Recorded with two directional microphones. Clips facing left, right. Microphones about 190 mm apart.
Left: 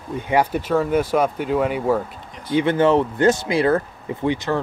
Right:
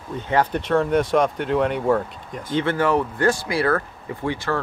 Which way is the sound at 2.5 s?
20° left (ahead or behind).